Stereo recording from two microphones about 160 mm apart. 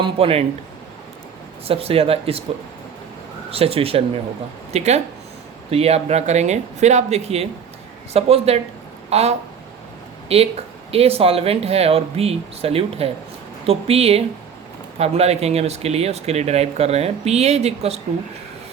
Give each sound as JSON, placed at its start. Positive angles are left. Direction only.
{"t": 0.0, "sound": "speech", "side_deg": -35}
{"t": 1.6, "sound": "speech", "side_deg": -35}
{"t": 3.5, "sound": "speech", "side_deg": -35}
{"t": 9.0, "sound": "a sound", "side_deg": -40}
{"t": 10.2, "sound": "speech", "side_deg": -40}